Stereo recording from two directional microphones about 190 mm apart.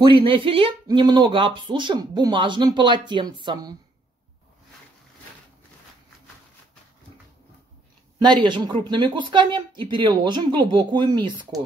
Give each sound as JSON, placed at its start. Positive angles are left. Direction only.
{"t": 0.0, "sound": "speech", "side_deg": -25}
{"t": 8.5, "sound": "speech", "side_deg": -20}